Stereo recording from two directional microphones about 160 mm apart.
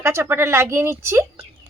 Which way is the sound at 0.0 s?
15° right (ahead or behind).